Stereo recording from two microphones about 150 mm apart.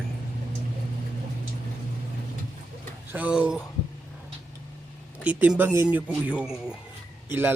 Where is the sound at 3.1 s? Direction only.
10° right (ahead or behind).